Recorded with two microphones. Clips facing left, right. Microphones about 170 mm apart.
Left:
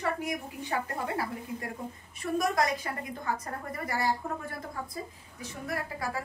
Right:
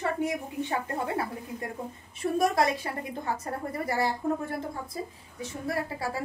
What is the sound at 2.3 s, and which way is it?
A woman's voice, 30° right (ahead or behind).